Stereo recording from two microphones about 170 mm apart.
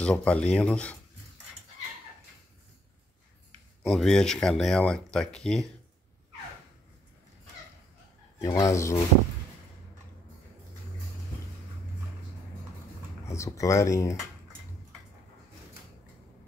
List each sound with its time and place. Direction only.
0.0 s speech: 5° left (ahead or behind)
3.8 s speech: centre (ahead or behind)
8.4 s speech: 20° left (ahead or behind)
13.3 s speech: 20° left (ahead or behind)